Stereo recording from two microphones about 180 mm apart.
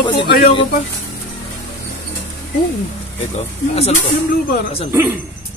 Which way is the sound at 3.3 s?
35° left (ahead or behind).